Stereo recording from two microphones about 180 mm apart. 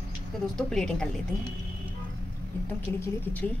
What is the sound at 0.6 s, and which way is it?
Speech, 5° left (ahead or behind).